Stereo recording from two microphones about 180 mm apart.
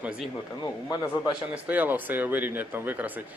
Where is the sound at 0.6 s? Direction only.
20° left (ahead or behind).